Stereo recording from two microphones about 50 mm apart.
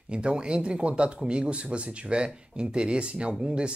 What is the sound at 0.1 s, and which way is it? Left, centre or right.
Speech, centre.